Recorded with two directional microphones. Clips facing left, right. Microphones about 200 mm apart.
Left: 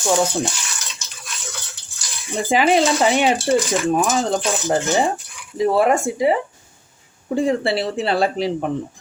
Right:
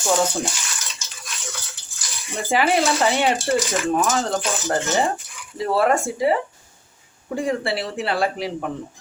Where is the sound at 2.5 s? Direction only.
20° left (ahead or behind).